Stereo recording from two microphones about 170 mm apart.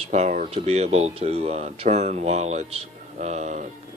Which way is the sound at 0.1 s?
40° right (ahead or behind).